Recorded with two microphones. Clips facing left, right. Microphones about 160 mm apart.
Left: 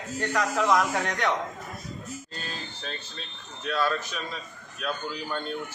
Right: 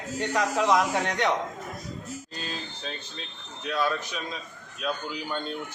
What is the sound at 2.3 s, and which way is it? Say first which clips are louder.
Speech: right 2 dB; 15° right (ahead or behind).